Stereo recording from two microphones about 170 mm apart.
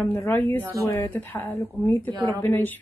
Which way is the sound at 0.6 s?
20° right (ahead or behind).